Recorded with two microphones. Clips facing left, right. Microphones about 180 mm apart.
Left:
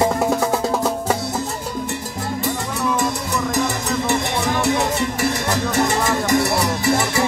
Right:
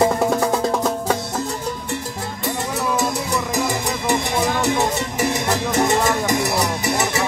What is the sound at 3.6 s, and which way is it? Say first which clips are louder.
Music: left 1 dB; 15° right (ahead or behind).